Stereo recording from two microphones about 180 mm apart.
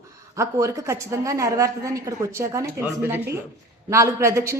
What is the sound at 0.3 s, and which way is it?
A woman's voice, 15° right (ahead or behind).